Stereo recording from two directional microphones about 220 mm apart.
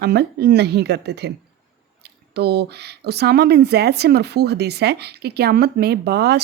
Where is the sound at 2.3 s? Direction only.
50° right (ahead or behind).